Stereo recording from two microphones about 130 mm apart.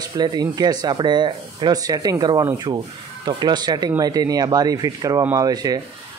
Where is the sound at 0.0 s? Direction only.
30° right (ahead or behind).